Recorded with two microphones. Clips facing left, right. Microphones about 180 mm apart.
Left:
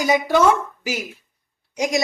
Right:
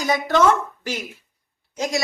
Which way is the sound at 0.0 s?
10° left (ahead or behind).